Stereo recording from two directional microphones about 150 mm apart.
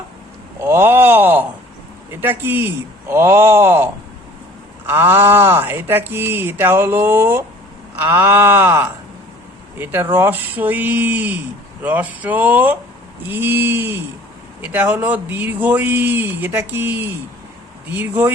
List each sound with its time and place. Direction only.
0.6 s speech: 15° right (ahead or behind)
4.9 s speech: 15° right (ahead or behind)